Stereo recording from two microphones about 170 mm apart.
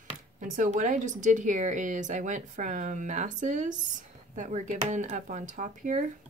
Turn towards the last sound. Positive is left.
turn(degrees=-45)  # may be behind; listen again after turning